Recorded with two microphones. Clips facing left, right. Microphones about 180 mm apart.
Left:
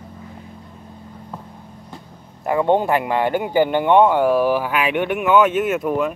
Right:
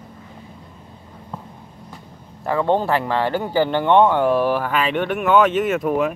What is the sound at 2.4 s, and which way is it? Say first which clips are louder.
Speech: left 2 dB; 15° left (ahead or behind).